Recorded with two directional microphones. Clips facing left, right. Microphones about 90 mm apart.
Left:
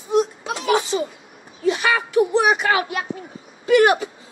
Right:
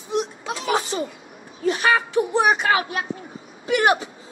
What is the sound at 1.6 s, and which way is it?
Speech, 30° right (ahead or behind).